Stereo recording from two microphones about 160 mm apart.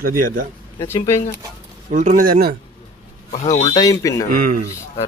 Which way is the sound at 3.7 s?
20° left (ahead or behind).